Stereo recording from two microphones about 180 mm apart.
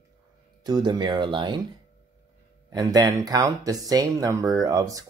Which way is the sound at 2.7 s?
20° right (ahead or behind).